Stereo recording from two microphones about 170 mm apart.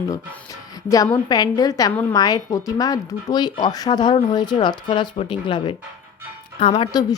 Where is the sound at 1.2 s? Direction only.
25° left (ahead or behind).